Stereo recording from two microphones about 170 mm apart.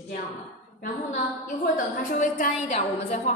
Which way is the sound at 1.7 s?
55° left (ahead or behind).